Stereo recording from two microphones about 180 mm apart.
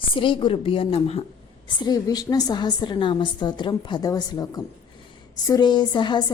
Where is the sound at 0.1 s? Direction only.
30° left (ahead or behind).